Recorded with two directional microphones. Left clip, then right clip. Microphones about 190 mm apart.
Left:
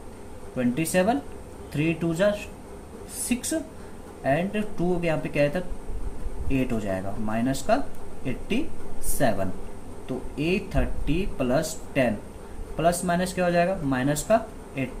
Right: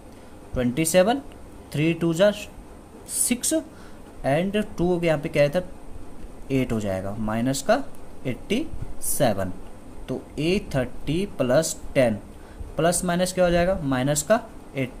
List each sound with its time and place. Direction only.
0.5 s speech: 55° right (ahead or behind)
10.1 s speech: 55° right (ahead or behind)